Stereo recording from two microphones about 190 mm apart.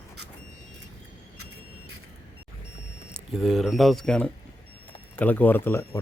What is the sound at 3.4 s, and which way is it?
Speech, centre (ahead or behind).